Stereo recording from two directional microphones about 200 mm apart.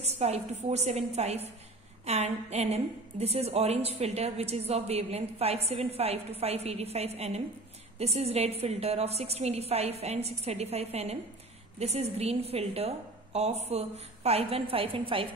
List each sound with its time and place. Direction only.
0.0 s a woman's voice: 35° right (ahead or behind)